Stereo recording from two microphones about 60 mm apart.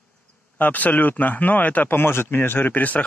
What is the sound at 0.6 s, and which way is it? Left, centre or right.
Speech, left.